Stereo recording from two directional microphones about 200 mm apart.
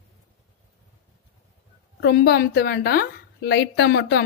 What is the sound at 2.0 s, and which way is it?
A woman's voice, 55° left (ahead or behind).